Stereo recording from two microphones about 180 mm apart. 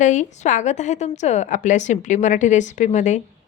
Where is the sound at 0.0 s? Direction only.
45° left (ahead or behind).